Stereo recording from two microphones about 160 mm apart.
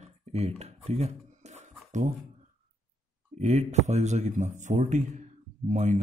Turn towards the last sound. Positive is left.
turn(degrees=-50)  # may be behind; listen again after turning